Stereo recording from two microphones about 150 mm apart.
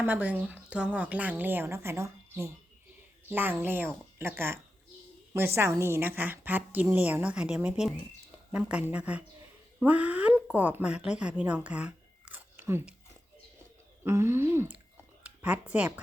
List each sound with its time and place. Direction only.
0.0 s a woman's voice: 10° right (ahead or behind)
14.0 s a woman's voice: 15° right (ahead or behind)